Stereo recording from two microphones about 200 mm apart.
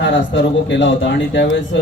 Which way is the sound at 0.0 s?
65° left (ahead or behind).